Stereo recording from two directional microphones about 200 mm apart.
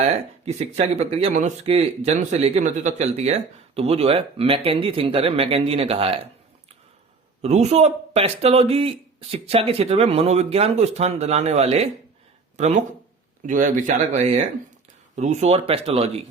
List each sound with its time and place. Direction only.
0.0 s speech: 35° right (ahead or behind)
7.4 s speech: 35° right (ahead or behind)